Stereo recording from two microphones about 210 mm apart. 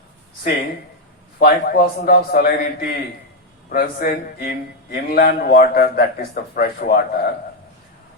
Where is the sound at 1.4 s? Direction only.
45° left (ahead or behind).